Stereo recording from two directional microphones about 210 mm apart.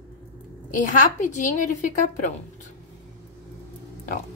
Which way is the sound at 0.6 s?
40° left (ahead or behind).